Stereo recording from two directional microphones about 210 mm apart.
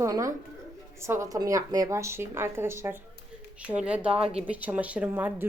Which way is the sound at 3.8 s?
5° right (ahead or behind).